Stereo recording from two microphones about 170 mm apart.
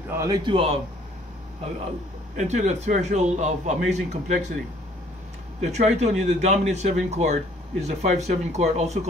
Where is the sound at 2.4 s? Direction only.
45° right (ahead or behind).